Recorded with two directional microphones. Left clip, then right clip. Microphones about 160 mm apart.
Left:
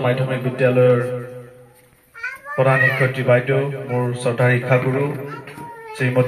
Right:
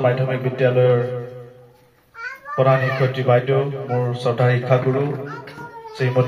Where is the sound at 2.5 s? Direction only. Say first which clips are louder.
Left 1 dB; 85° right.